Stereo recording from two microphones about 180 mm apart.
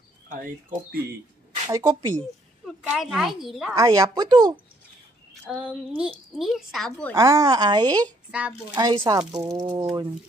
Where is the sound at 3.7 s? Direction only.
15° right (ahead or behind).